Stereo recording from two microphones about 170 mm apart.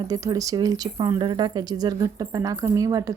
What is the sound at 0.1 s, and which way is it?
Speech, 20° right (ahead or behind).